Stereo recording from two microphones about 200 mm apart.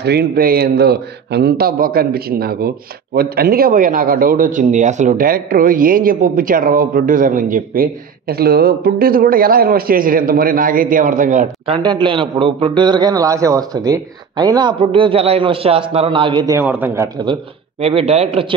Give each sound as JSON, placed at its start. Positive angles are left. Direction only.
{"t": 0.0, "sound": "a man's voice", "side_deg": -50}
{"t": 11.7, "sound": "a man's voice", "side_deg": -25}